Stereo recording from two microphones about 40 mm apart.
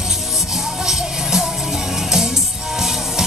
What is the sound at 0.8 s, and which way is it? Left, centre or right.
Music, centre.